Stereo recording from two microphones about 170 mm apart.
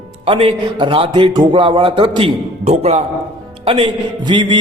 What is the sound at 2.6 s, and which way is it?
A man's voice, 40° right (ahead or behind).